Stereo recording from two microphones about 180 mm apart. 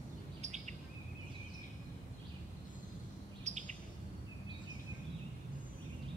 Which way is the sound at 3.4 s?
40° right (ahead or behind).